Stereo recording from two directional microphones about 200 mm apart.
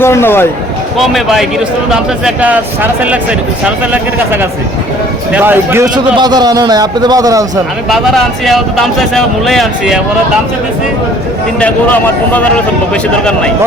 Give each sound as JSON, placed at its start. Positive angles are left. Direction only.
{"t": 0.0, "sound": "a man's voice", "side_deg": 10}
{"t": 0.9, "sound": "speech", "side_deg": 0}
{"t": 5.3, "sound": "a man's voice", "side_deg": -10}
{"t": 7.9, "sound": "speech", "side_deg": 0}
{"t": 11.6, "sound": "a man's voice", "side_deg": 10}